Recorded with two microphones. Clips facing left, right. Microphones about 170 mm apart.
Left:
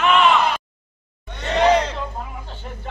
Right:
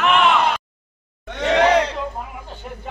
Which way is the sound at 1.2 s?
90° right.